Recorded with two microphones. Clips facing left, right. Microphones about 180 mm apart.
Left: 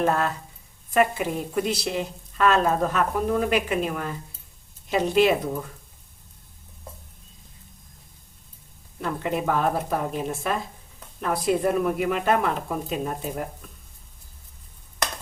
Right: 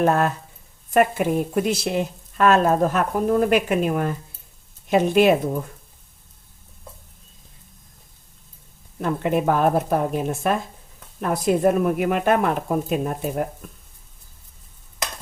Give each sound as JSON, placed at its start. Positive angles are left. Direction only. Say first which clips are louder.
{"t": 0.0, "sound": "a woman's voice", "louder": "right 4 dB", "side_deg": -50}
{"t": 9.0, "sound": "a woman's voice", "louder": "right 5 dB", "side_deg": -50}